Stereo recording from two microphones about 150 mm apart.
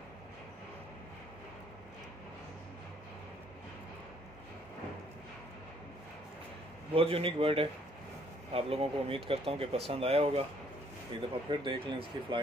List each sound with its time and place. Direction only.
6.9 s speech: 40° right (ahead or behind)